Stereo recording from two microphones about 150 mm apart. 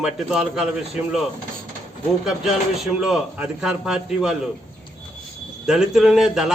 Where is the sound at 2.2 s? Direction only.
5° right (ahead or behind).